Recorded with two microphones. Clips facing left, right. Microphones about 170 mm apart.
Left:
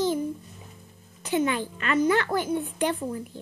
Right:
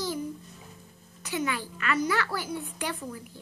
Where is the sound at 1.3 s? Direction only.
20° left (ahead or behind).